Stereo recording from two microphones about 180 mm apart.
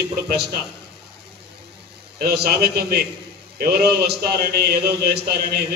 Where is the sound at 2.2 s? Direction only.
60° right (ahead or behind).